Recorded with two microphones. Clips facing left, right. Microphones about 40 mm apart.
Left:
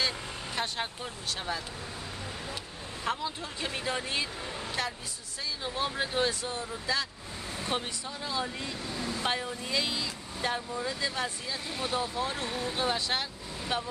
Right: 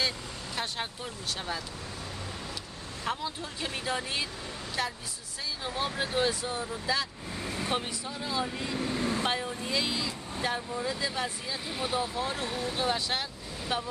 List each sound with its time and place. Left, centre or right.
0.6 s speech: centre
3.1 s speech: centre
8.7 s vehicle: right
9.2 s speech: centre